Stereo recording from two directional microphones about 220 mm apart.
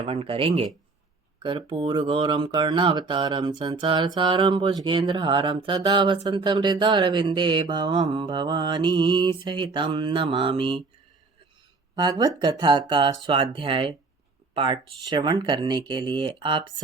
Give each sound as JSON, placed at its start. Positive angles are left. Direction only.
{"t": 0.0, "sound": "speech", "side_deg": -25}
{"t": 11.9, "sound": "speech", "side_deg": -20}